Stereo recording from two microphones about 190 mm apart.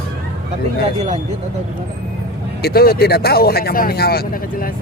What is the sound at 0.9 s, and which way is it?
Speech, 35° right (ahead or behind).